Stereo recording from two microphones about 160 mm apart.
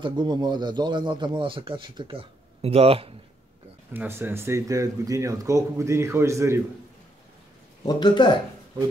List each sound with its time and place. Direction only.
0.0 s a man's voice: 30° right (ahead or behind)
3.9 s speech: 10° right (ahead or behind)
7.8 s speech: 25° left (ahead or behind)